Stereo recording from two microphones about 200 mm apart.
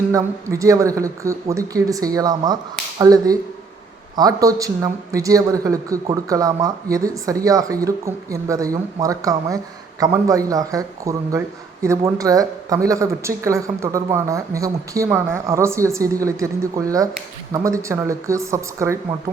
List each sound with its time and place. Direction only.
0.1 s a man's voice: 15° right (ahead or behind)